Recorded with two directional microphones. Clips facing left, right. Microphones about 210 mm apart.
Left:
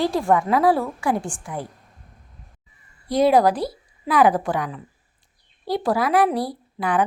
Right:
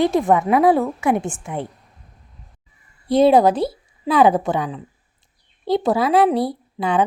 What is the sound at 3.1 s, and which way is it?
A woman's voice, 25° right (ahead or behind).